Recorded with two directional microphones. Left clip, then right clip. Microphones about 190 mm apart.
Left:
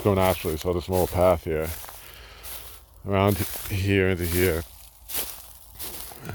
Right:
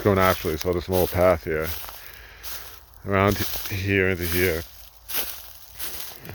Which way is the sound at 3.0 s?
5° left (ahead or behind).